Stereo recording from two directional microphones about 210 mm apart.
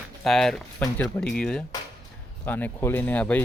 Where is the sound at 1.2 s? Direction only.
5° left (ahead or behind).